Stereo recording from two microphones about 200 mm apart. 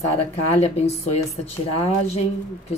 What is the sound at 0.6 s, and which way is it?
A woman's voice, 30° left (ahead or behind).